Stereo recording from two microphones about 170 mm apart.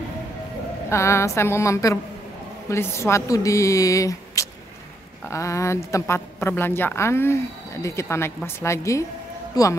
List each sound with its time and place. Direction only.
0.8 s a woman's voice: 15° left (ahead or behind)